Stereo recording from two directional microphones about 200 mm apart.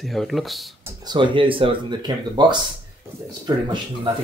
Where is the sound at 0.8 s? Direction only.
20° right (ahead or behind).